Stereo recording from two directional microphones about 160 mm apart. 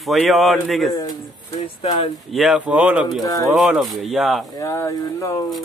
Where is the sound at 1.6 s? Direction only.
35° left (ahead or behind).